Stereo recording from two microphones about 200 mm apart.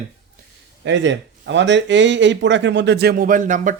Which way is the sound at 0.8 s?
65° right (ahead or behind).